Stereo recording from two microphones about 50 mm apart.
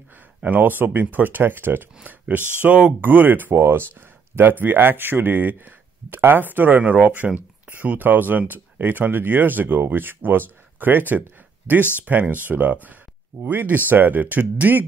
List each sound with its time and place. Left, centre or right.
0.4 s speech: right
2.0 s speech: right
3.5 s speech: right
4.4 s speech: right